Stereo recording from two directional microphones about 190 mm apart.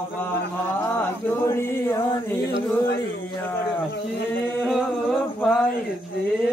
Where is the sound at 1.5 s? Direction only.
15° left (ahead or behind).